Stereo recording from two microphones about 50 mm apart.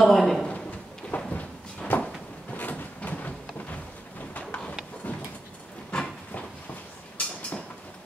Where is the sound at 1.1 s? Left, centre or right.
Left.